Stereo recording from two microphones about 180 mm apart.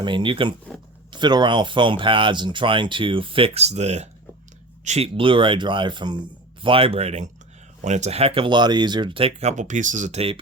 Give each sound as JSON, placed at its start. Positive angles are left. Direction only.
{"t": 0.0, "sound": "speech", "side_deg": -25}